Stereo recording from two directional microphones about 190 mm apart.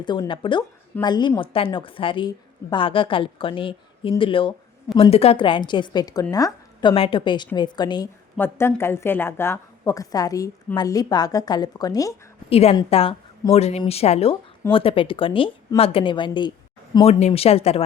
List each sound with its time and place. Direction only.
0.0 s a woman's voice: 25° left (ahead or behind)
12.5 s a woman's voice: 30° left (ahead or behind)
17.1 s speech: 35° left (ahead or behind)